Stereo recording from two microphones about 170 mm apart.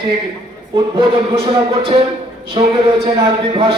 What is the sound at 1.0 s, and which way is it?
Music, 30° right (ahead or behind).